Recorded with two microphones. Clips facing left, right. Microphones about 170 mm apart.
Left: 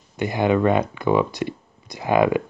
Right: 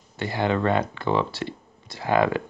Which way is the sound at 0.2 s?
15° left (ahead or behind).